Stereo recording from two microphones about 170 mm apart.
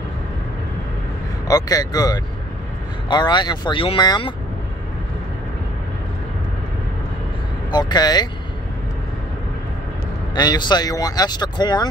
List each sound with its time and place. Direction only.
1.5 s speech: 20° left (ahead or behind)
7.7 s speech: 25° left (ahead or behind)
10.3 s speech: 25° left (ahead or behind)